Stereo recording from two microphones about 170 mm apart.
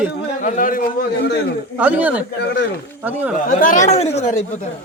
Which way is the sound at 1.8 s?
10° right (ahead or behind).